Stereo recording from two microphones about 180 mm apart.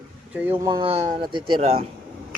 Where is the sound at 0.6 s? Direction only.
25° right (ahead or behind).